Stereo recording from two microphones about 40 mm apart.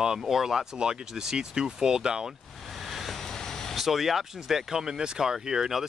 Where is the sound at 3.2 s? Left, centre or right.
Centre.